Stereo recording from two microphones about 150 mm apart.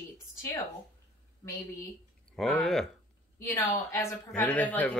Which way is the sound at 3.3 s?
20° left (ahead or behind).